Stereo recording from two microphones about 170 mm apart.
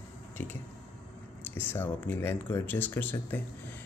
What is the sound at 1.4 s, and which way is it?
Speech, 10° left (ahead or behind).